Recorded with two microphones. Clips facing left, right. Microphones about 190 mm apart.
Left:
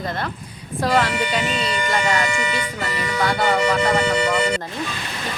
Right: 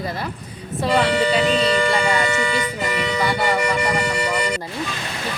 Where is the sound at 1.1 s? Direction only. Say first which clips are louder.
Right 5 dB; 35° right (ahead or behind).